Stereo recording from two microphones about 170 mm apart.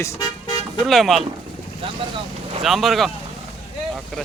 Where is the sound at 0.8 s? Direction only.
Centre (ahead or behind).